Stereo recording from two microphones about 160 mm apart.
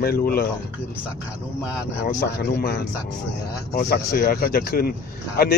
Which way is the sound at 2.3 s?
80° left.